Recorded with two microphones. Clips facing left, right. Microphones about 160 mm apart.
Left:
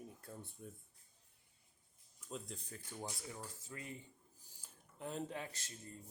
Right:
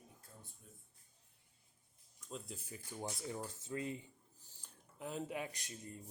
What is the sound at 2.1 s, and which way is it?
Speech, 5° left (ahead or behind).